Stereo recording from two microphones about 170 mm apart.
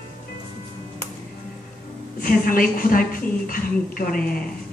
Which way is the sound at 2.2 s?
55° left (ahead or behind).